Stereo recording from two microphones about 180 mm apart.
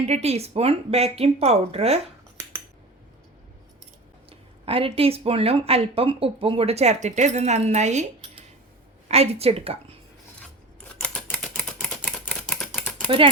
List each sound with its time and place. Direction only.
0.0 s speech: 35° right (ahead or behind)
4.3 s speech: 30° right (ahead or behind)
11.0 s typewriter: 5° left (ahead or behind)